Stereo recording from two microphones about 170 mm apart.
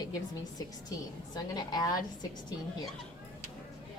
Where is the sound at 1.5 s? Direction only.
25° left (ahead or behind).